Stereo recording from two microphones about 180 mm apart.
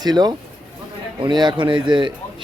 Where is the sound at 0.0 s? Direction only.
20° right (ahead or behind).